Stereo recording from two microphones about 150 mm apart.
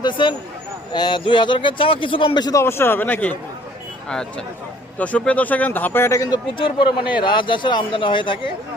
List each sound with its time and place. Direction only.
0.0 s a man's voice: 30° left (ahead or behind)
6.6 s a man's voice: 35° left (ahead or behind)